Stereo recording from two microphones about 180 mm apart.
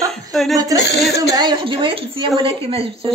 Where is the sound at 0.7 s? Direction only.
70° left (ahead or behind).